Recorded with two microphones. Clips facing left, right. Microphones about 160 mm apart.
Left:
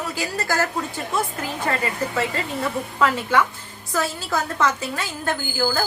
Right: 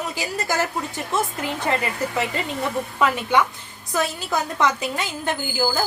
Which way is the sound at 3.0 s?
20° right (ahead or behind).